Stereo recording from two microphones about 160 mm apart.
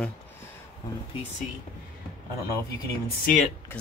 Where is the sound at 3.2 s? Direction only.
55° left (ahead or behind).